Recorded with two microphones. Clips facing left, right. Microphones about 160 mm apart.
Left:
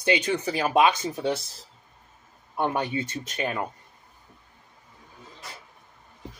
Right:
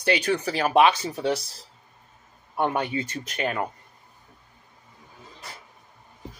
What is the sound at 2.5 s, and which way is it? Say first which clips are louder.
Speech: right 1 dB; 15° right (ahead or behind).